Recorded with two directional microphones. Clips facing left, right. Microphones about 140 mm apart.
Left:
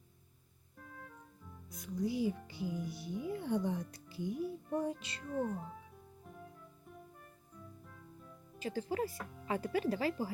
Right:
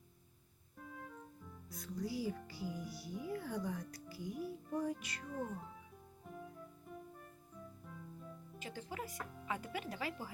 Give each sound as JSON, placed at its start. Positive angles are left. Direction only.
{"t": 1.7, "sound": "speech", "side_deg": 20}
{"t": 8.5, "sound": "speech", "side_deg": 35}